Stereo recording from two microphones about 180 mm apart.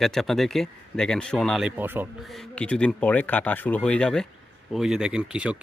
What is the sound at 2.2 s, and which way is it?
Speech, centre (ahead or behind).